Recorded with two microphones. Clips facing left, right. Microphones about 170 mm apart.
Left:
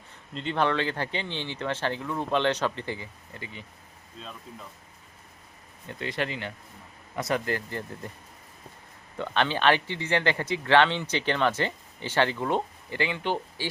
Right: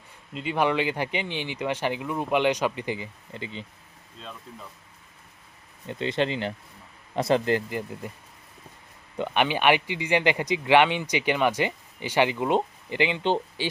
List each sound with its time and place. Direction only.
0.3 s speech: 10° right (ahead or behind)
5.9 s speech: 25° right (ahead or behind)
9.1 s speech: 15° right (ahead or behind)